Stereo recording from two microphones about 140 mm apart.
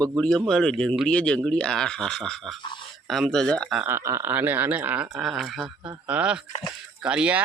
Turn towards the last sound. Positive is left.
turn(degrees=-10)  # may be behind; listen again after turning